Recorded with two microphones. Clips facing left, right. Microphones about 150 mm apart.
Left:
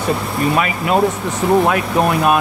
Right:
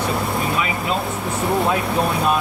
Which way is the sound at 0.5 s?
65° left (ahead or behind).